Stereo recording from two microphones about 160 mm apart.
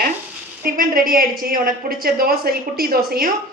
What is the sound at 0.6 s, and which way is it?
A woman's voice, 65° right (ahead or behind).